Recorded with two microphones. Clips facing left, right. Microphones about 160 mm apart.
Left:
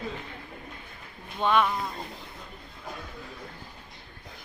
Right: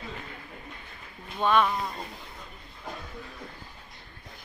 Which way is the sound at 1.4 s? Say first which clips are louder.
Even; 10° right (ahead or behind).